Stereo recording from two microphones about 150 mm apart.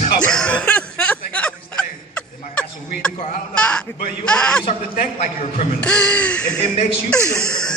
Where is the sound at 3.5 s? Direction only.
5° left (ahead or behind).